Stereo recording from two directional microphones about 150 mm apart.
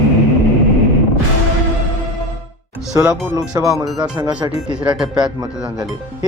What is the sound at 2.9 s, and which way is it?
Speech, 20° right (ahead or behind).